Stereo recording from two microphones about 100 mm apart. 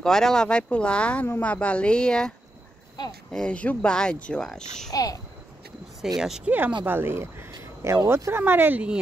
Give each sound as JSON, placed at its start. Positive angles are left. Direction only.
{"t": 0.0, "sound": "speech", "side_deg": 5}
{"t": 1.2, "sound": "a woman's voice", "side_deg": 25}
{"t": 1.5, "sound": "a child's voice", "side_deg": 10}
{"t": 4.9, "sound": "babbling", "side_deg": 35}
{"t": 6.1, "sound": "a child's voice", "side_deg": -5}
{"t": 6.9, "sound": "speech", "side_deg": -25}
{"t": 7.6, "sound": "a sound", "side_deg": -30}
{"t": 8.1, "sound": "speech", "side_deg": -25}